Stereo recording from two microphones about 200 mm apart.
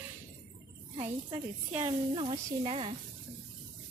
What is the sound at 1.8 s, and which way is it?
Speech, 25° right (ahead or behind).